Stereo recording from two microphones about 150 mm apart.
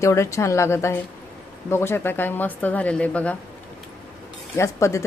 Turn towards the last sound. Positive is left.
turn(degrees=20)  # may be behind; listen again after turning